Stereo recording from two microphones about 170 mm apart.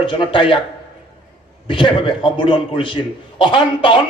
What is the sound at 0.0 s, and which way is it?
Speech, 30° left (ahead or behind).